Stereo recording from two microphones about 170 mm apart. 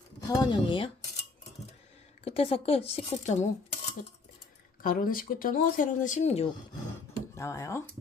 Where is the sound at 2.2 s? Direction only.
35° left (ahead or behind).